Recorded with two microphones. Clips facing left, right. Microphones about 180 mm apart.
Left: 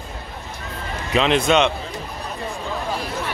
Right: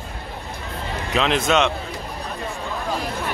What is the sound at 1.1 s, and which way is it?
Speech, centre (ahead or behind).